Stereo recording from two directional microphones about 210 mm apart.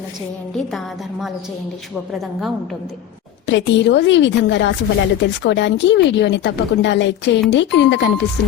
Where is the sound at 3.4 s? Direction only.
55° left (ahead or behind).